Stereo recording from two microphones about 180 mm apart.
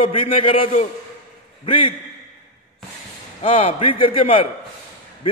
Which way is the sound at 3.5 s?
30° left (ahead or behind).